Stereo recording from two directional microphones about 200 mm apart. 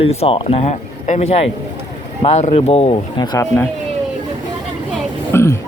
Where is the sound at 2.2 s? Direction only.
30° left (ahead or behind).